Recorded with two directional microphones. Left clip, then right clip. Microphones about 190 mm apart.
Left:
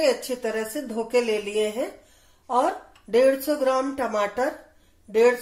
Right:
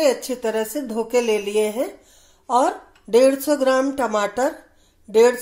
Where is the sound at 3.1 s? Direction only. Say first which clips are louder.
Right 4 dB; 45° right (ahead or behind).